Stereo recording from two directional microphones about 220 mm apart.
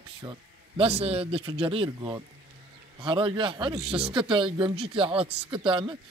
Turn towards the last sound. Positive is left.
turn(degrees=-20)  # may be behind; listen again after turning